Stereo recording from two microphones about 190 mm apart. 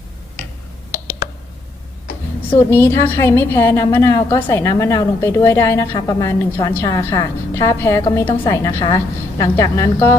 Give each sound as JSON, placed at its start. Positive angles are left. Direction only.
{"t": 2.5, "sound": "a woman's voice", "side_deg": 10}